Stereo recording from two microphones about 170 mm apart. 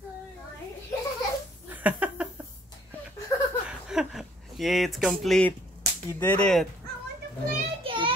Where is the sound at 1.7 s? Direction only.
10° right (ahead or behind).